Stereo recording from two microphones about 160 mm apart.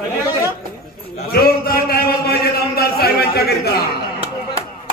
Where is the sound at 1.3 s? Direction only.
70° left (ahead or behind).